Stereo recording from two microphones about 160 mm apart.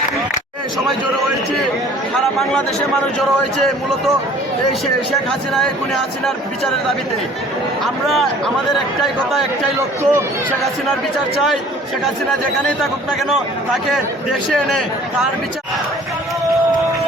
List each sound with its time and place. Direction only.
3.2 s speech: centre (ahead or behind)
5.1 s speech: centre (ahead or behind)
9.7 s speech: 15° right (ahead or behind)
12.8 s speech: centre (ahead or behind)